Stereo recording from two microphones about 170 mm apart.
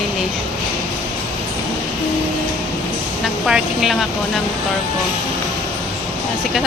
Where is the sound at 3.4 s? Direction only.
Centre (ahead or behind).